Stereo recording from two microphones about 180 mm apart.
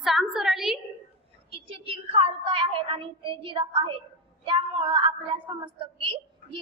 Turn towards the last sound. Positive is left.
turn(degrees=-25)  # may be behind; listen again after turning